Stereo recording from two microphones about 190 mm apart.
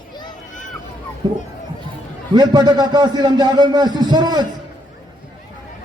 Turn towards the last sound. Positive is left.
turn(degrees=-20)  # may be behind; listen again after turning